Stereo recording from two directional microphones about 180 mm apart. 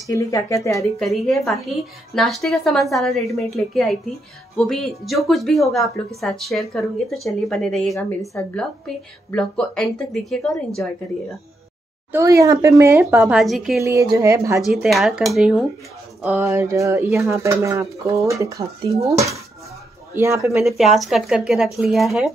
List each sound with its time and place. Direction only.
0.0 s speech: 20° left (ahead or behind)
0.9 s a woman's voice: centre (ahead or behind)
12.1 s speech: 15° right (ahead or behind)
13.0 s a woman's voice: centre (ahead or behind)
13.8 s speech: 15° right (ahead or behind)
14.7 s a woman's voice: centre (ahead or behind); by 19.1 s 15° right (ahead or behind)
20.2 s speech: 15° right (ahead or behind)
20.6 s a woman's voice: centre (ahead or behind)